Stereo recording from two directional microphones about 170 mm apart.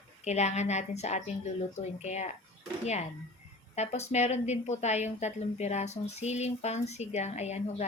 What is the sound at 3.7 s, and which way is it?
A woman's voice, 40° left (ahead or behind).